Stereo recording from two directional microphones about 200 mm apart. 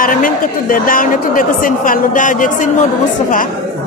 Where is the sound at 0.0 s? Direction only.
45° left (ahead or behind).